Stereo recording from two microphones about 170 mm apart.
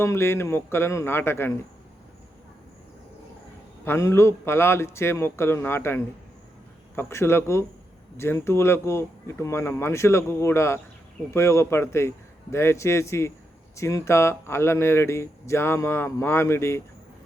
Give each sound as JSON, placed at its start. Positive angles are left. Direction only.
{"t": 0.0, "sound": "speech", "side_deg": 15}
{"t": 3.8, "sound": "speech", "side_deg": 15}